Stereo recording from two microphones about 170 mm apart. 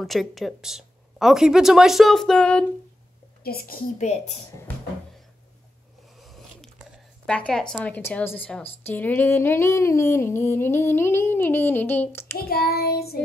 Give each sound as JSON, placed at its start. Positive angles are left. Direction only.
{"t": 0.0, "sound": "a woman's voice", "side_deg": 0}
{"t": 3.4, "sound": "child singing", "side_deg": 60}
{"t": 4.0, "sound": "speech", "side_deg": 40}
{"t": 6.1, "sound": "a sound", "side_deg": 0}
{"t": 12.4, "sound": "child singing", "side_deg": 65}